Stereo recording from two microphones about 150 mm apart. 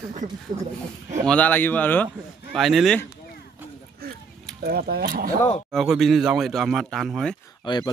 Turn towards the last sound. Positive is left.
turn(degrees=30)  # may be behind; listen again after turning